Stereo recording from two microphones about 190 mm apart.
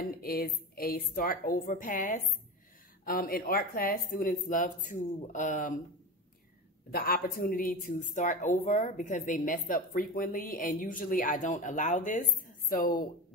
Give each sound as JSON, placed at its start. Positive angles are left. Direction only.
{"t": 0.0, "sound": "a woman's voice", "side_deg": 50}
{"t": 6.9, "sound": "a woman's voice", "side_deg": 50}